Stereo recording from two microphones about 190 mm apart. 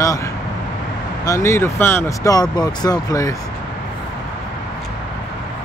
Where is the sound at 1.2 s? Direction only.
15° left (ahead or behind).